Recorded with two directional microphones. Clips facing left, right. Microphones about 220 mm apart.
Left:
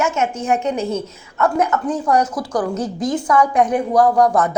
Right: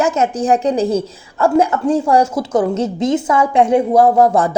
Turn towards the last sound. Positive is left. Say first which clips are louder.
# right 3 dB
turn(degrees=-25)  # may be behind; listen again after turning